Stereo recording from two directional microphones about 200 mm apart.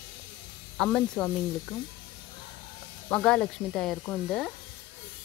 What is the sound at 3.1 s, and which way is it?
Speech, 5° left (ahead or behind).